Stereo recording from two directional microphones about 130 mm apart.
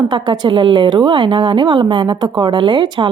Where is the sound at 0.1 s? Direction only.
35° right (ahead or behind).